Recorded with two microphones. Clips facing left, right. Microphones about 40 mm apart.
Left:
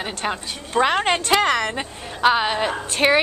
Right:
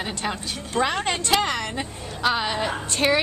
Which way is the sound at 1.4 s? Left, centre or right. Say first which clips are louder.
Left 6 dB; left.